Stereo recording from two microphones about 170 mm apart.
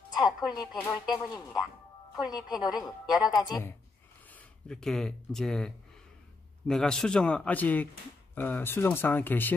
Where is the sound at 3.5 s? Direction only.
20° left (ahead or behind).